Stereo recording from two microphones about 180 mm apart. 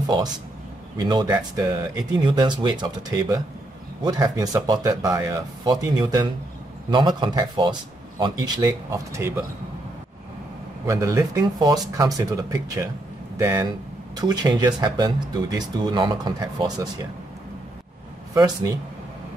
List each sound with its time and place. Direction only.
0.0 s a man's voice: 20° right (ahead or behind)
10.9 s speech: 15° right (ahead or behind)
18.3 s speech: 20° right (ahead or behind)